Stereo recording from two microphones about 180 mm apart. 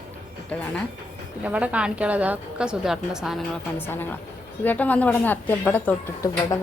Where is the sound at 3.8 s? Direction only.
10° left (ahead or behind).